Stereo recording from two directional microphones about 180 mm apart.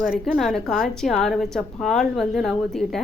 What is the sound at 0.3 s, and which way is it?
A woman's voice, centre (ahead or behind).